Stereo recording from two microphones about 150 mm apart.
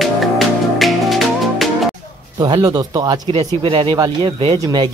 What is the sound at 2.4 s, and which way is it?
Speech, 30° right (ahead or behind).